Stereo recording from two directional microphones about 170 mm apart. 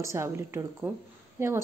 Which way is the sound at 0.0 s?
15° right (ahead or behind).